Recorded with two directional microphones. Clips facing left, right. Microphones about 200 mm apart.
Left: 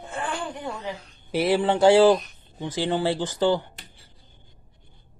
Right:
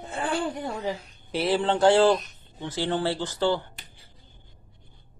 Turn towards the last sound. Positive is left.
turn(degrees=15)  # may be behind; listen again after turning